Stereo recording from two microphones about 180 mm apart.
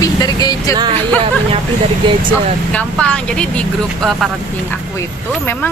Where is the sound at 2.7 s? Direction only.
5° left (ahead or behind).